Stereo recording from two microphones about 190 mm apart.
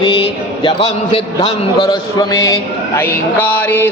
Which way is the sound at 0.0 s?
25° left (ahead or behind).